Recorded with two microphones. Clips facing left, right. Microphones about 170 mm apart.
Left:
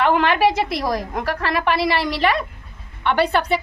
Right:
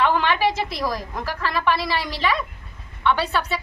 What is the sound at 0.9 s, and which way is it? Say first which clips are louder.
A woman's voice: left 5 dB; 65° left (ahead or behind).